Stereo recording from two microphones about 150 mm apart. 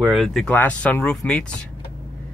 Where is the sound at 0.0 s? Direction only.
Centre (ahead or behind).